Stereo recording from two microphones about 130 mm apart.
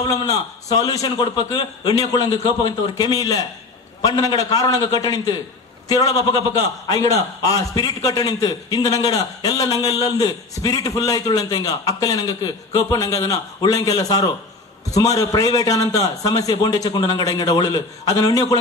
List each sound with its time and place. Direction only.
0.0 s a man's voice: 30° left (ahead or behind)